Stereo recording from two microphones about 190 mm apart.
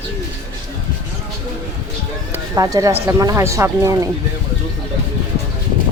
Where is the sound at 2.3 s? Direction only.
20° right (ahead or behind).